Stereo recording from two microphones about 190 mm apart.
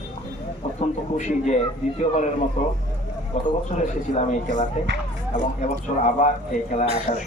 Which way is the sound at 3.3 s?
40° left (ahead or behind).